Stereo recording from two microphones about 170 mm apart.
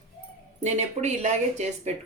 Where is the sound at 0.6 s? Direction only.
40° right (ahead or behind).